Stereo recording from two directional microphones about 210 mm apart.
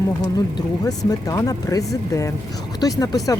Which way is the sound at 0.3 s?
15° left (ahead or behind).